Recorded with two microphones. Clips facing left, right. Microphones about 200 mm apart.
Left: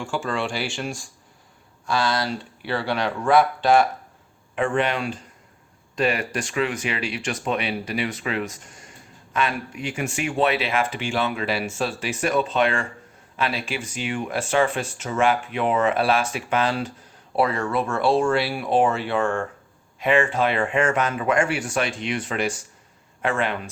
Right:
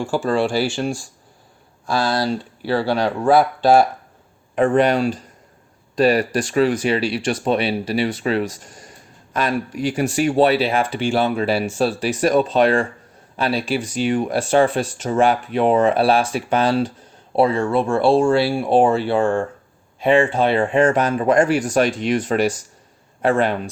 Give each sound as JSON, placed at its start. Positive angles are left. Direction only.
{"t": 0.0, "sound": "speech", "side_deg": -35}